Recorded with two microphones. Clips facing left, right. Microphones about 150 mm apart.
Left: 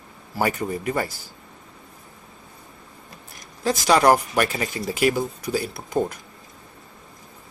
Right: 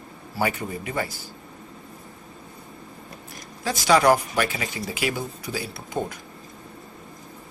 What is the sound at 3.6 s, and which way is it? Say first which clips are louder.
Speech: left 1 dB; 45° left (ahead or behind).